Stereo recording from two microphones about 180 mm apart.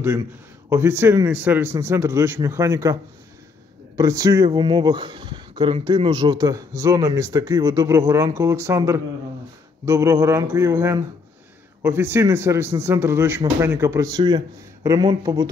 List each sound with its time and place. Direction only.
0.7 s a man's voice: 15° right (ahead or behind)